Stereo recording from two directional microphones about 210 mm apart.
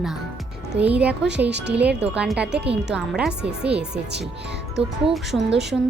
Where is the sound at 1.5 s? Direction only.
55° right (ahead or behind).